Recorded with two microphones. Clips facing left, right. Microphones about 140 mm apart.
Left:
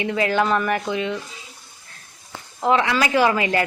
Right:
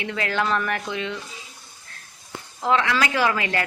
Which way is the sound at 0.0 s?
10° left (ahead or behind).